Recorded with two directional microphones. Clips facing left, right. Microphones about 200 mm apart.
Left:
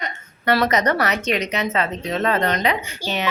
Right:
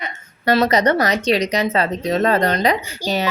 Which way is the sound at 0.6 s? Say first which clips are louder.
Right 3 dB; 30° right (ahead or behind).